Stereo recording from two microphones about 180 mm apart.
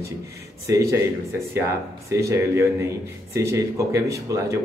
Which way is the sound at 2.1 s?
15° right (ahead or behind).